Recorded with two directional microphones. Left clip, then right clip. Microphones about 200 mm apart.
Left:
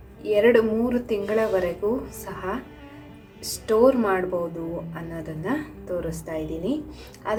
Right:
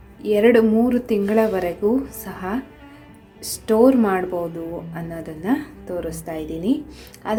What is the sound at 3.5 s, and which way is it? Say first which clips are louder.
A woman's voice: right 3 dB; 30° right (ahead or behind).